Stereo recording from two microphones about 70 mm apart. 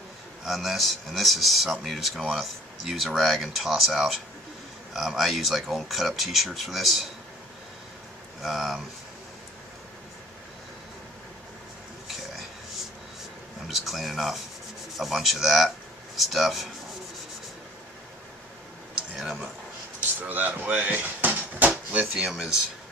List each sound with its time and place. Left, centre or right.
0.4 s speech: centre
8.4 s speech: centre
13.7 s speech: centre
19.1 s speech: centre
20.2 s speech: right
21.9 s speech: centre